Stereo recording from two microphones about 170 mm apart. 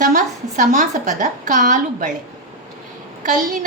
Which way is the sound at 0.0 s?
50° right (ahead or behind).